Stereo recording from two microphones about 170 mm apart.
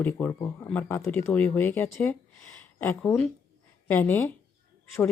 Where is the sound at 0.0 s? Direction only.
10° left (ahead or behind).